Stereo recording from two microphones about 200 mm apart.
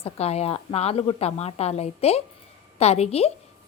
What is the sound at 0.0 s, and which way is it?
A woman's voice, 30° left (ahead or behind).